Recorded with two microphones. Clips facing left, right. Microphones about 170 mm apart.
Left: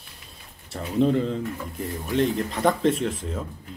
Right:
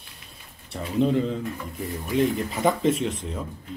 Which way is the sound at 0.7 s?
Centre (ahead or behind).